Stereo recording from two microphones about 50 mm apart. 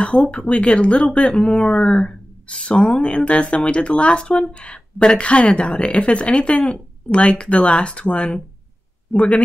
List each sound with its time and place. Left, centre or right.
0.0 s speech: left